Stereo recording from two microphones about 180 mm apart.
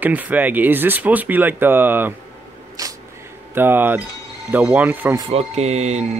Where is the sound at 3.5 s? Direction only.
10° right (ahead or behind).